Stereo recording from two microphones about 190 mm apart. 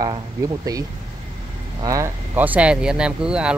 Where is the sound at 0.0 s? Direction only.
20° right (ahead or behind).